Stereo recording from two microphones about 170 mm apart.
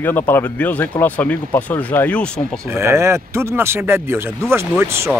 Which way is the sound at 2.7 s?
15° right (ahead or behind).